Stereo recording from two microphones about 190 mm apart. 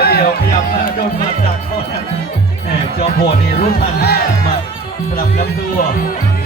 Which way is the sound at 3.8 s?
55° left (ahead or behind).